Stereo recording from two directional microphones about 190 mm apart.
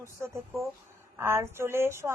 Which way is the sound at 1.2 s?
15° right (ahead or behind).